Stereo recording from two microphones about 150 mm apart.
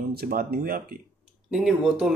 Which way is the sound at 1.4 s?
5° right (ahead or behind).